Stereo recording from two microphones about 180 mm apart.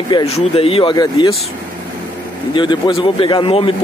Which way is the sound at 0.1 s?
30° left (ahead or behind).